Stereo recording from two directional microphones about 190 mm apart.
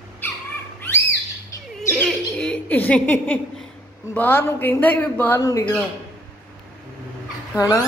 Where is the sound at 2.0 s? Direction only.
5° left (ahead or behind).